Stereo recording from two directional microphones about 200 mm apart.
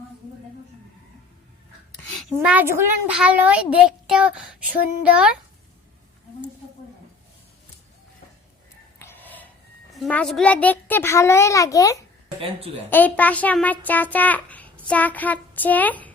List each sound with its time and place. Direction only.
2.0 s a sound: 5° left (ahead or behind)
2.4 s a child's voice: 5° right (ahead or behind)
9.0 s gasp: 10° left (ahead or behind)
9.9 s a child's voice: 5° left (ahead or behind)
12.4 s speech: 30° right (ahead or behind)
12.9 s a child's voice: 10° left (ahead or behind)
14.8 s child singing: 10° left (ahead or behind)